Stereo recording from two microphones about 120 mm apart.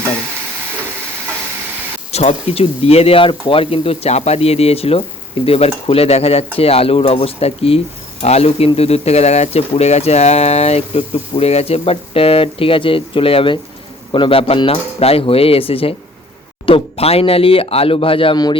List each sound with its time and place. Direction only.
2.1 s speech: 60° left (ahead or behind)